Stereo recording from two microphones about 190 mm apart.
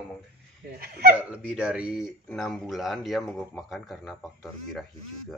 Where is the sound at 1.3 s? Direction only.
5° right (ahead or behind).